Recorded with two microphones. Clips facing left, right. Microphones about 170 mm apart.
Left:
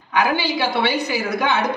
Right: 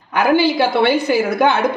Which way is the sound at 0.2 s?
50° right (ahead or behind).